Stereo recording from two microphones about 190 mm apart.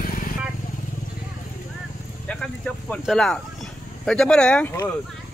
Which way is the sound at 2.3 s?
5° left (ahead or behind).